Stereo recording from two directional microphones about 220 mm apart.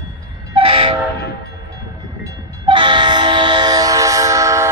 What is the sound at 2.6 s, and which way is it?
Train, 20° right (ahead or behind).